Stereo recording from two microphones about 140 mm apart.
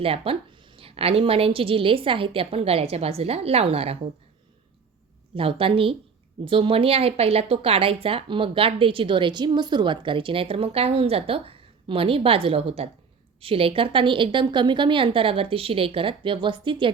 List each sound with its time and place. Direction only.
0.0 s a woman's voice: 40° right (ahead or behind)
5.3 s a woman's voice: 40° right (ahead or behind)